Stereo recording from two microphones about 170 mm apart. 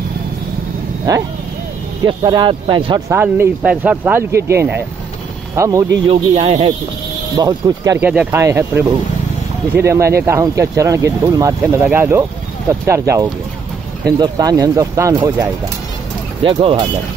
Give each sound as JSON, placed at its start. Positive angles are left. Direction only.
{"t": 1.1, "sound": "speech", "side_deg": -20}
{"t": 3.1, "sound": "speech", "side_deg": -15}
{"t": 6.0, "sound": "speech", "side_deg": -35}
{"t": 7.3, "sound": "speech", "side_deg": -20}
{"t": 8.0, "sound": "speech", "side_deg": -10}
{"t": 16.4, "sound": "speech", "side_deg": -25}